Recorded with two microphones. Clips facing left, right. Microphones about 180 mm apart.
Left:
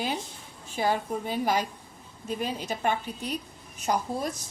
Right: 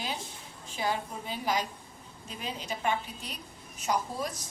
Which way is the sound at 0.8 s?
45° left (ahead or behind).